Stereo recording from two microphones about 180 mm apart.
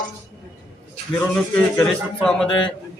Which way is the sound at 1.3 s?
5° left (ahead or behind).